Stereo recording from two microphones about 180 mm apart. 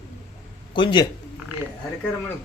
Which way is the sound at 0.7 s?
25° left (ahead or behind).